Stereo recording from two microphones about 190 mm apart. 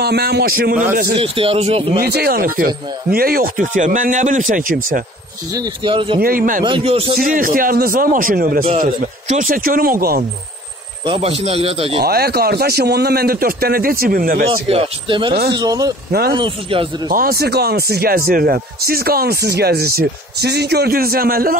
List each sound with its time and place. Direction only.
0.0 s a man's voice: 60° right (ahead or behind)
1.1 s speech: 30° right (ahead or behind)
2.0 s speech: 55° right (ahead or behind)
5.5 s speech: 25° right (ahead or behind)
6.1 s speech: 50° right (ahead or behind)
6.6 s speech: 30° right (ahead or behind)
7.2 s speech: 45° right (ahead or behind)
11.1 s speech: 30° right (ahead or behind)
12.0 s speech: 55° right (ahead or behind)
14.7 s speech: 30° right (ahead or behind)
16.1 s a man's voice: 55° right (ahead or behind)
16.3 s speech: 25° right (ahead or behind)
17.1 s speech: 50° right (ahead or behind)